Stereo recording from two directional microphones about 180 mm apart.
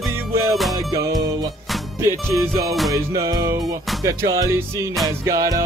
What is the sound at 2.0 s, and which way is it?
Music, 20° right (ahead or behind).